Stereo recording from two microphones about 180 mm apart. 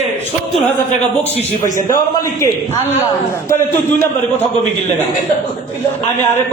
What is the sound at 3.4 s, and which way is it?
Speech, 15° left (ahead or behind).